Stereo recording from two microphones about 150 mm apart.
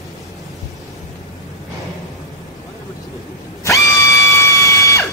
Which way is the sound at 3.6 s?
20° left (ahead or behind).